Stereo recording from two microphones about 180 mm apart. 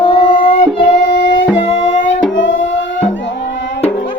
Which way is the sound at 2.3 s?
90° left.